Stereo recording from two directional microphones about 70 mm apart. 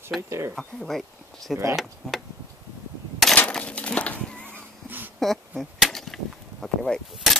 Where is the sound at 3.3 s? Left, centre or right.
Centre.